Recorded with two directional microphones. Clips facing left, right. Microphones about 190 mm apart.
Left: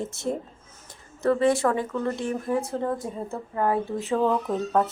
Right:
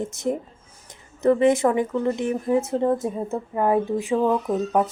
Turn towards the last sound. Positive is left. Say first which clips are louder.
# right 2 dB
turn(degrees=-10)  # may be behind; listen again after turning